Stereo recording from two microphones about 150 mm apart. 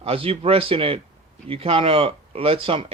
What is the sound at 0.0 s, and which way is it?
Speech, 40° right (ahead or behind).